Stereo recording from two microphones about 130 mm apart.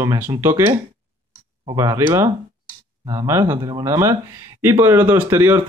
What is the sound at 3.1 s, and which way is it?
Speech, 25° right (ahead or behind).